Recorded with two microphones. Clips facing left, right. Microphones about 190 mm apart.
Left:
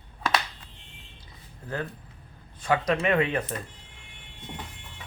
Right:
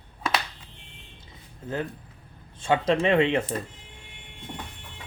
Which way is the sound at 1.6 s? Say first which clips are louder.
Right 3 dB; 20° right (ahead or behind).